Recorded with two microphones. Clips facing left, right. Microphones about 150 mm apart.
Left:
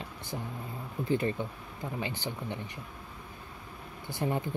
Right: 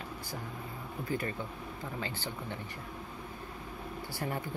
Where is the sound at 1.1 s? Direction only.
20° left (ahead or behind).